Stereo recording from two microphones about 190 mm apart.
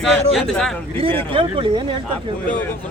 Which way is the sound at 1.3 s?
25° right (ahead or behind).